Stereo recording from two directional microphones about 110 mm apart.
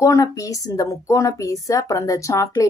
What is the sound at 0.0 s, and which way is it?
A woman's voice, 30° left (ahead or behind).